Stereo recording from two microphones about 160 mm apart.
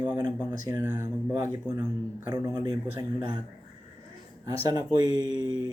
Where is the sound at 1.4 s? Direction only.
20° right (ahead or behind).